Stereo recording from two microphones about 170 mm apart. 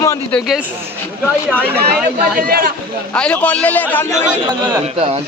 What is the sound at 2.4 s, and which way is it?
Speech, 60° right (ahead or behind).